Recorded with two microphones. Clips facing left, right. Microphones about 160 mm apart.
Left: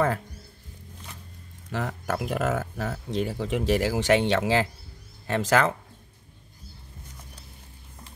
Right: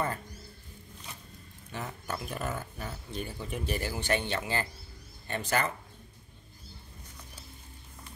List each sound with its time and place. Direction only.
1.7 s speech: 90° left